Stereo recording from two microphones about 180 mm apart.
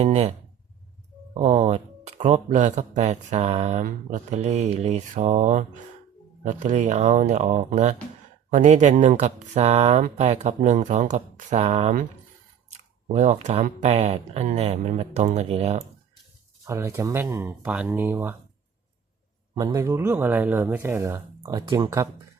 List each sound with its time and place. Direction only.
0.0 s speech: 35° right (ahead or behind)
1.3 s speech: 40° right (ahead or behind)
16.6 s speech: 15° right (ahead or behind)
19.5 s speech: 20° right (ahead or behind)